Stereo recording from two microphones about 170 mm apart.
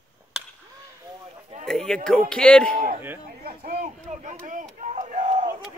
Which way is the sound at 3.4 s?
55° right (ahead or behind).